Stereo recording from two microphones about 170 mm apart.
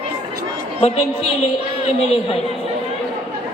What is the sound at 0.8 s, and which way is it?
Speech, 40° left (ahead or behind).